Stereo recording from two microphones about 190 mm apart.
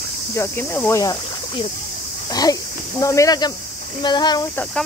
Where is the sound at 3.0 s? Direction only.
15° left (ahead or behind).